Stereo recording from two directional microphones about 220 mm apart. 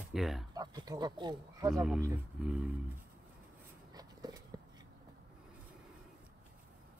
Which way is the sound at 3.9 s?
15° right (ahead or behind).